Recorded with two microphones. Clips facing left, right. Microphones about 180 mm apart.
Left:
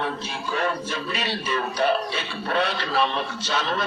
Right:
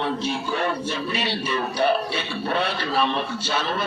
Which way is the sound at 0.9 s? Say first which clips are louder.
Right 2 dB; 10° right (ahead or behind).